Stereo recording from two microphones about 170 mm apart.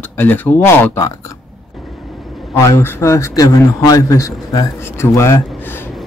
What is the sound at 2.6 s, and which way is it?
A man's voice, 15° left (ahead or behind).